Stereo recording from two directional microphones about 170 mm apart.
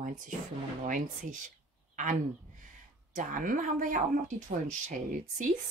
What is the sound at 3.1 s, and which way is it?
Speech, 50° right (ahead or behind).